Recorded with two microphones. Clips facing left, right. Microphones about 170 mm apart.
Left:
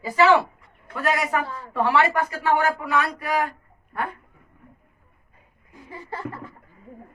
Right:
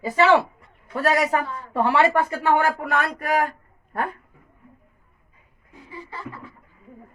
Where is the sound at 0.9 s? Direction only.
40° right (ahead or behind).